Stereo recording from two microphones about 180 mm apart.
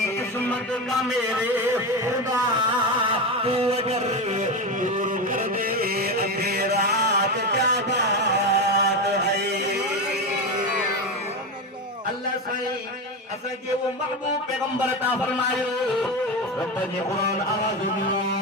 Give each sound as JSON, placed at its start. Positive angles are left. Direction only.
{"t": 0.3, "sound": "music", "side_deg": 10}
{"t": 1.0, "sound": "a man's voice", "side_deg": -10}
{"t": 3.4, "sound": "a sound", "side_deg": -35}